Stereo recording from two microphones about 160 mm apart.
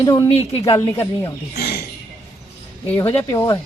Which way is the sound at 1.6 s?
75° left (ahead or behind).